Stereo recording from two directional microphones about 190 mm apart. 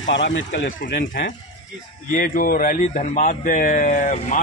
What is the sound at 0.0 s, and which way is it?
Speech, 75° left (ahead or behind).